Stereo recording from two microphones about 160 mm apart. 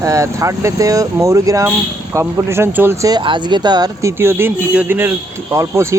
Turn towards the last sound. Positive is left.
turn(degrees=-20)  # may be behind; listen again after turning